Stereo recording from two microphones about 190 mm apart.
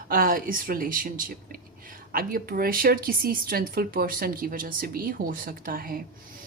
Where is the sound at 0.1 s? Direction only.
45° right (ahead or behind).